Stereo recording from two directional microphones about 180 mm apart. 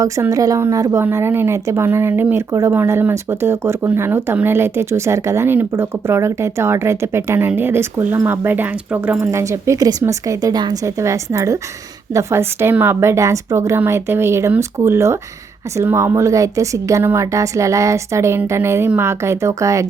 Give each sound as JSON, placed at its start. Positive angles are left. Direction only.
{"t": 0.0, "sound": "a woman's voice", "side_deg": -20}